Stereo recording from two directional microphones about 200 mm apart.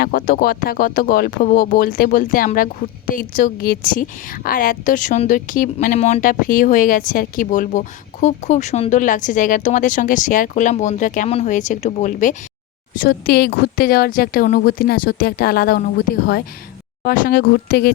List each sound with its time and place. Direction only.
0.0 s speech: 45° left (ahead or behind)
13.0 s a woman's voice: 55° left (ahead or behind)